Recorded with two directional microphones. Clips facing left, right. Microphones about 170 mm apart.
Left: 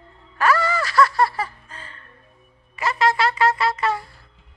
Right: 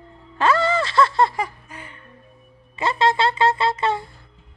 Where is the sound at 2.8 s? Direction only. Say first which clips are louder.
Right 1 dB; 25° right (ahead or behind).